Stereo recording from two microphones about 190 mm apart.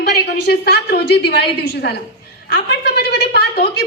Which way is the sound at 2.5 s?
60° left (ahead or behind).